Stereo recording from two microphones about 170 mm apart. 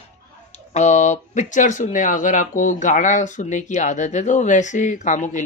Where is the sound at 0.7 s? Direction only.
45° left (ahead or behind).